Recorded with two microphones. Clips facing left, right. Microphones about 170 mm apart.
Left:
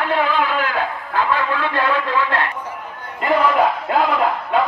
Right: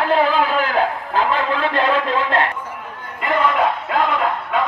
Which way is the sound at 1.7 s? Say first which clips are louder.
Right 1 dB; 25° right (ahead or behind).